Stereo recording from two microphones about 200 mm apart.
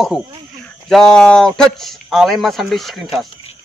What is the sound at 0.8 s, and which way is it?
A man's voice, centre (ahead or behind).